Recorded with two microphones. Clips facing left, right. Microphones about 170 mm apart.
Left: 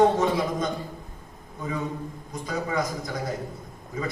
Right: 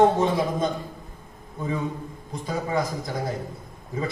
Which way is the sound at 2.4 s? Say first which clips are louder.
Right 2 dB; 25° right (ahead or behind).